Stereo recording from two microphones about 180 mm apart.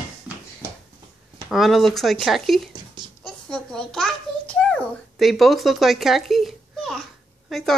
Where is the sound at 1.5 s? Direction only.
Centre (ahead or behind).